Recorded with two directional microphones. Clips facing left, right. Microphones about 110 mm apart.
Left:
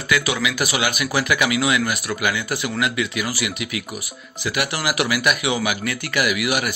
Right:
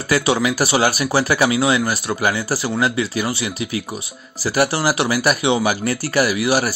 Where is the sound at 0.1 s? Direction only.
35° right (ahead or behind).